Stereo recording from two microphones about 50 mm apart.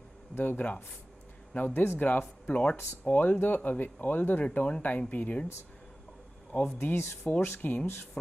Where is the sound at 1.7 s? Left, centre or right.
Left.